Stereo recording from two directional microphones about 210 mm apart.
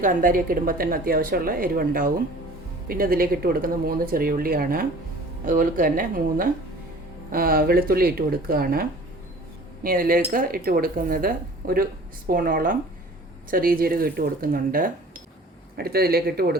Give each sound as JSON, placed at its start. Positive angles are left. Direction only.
{"t": 0.0, "sound": "speech", "side_deg": -40}